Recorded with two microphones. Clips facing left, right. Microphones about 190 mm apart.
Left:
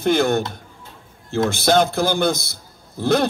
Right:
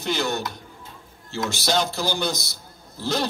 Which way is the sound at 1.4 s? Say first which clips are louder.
Left 7 dB; 55° left (ahead or behind).